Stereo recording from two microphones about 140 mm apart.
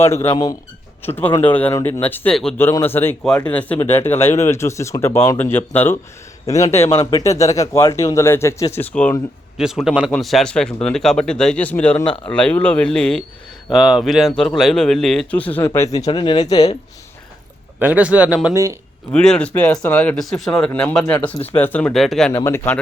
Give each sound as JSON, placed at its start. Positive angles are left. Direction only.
{"t": 0.0, "sound": "a man's voice", "side_deg": 15}
{"t": 2.6, "sound": "speech", "side_deg": 15}
{"t": 9.6, "sound": "a man's voice", "side_deg": -5}
{"t": 16.0, "sound": "speech", "side_deg": 30}
{"t": 17.7, "sound": "speech", "side_deg": -10}
{"t": 18.5, "sound": "speech", "side_deg": -20}
{"t": 19.1, "sound": "speech", "side_deg": 5}
{"t": 22.3, "sound": "speech", "side_deg": 20}